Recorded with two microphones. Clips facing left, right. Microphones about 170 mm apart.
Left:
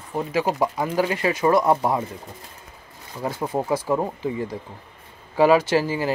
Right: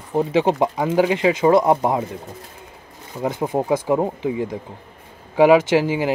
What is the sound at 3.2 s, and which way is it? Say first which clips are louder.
Speech: right 4 dB; 20° right (ahead or behind).